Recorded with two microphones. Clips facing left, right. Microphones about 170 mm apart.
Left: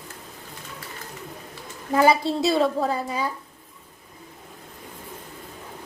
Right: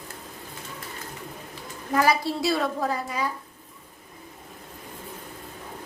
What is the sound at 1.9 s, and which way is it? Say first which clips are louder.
Speech: left 4 dB; 25° left (ahead or behind).